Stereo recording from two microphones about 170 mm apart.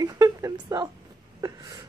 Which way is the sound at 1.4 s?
20° right (ahead or behind).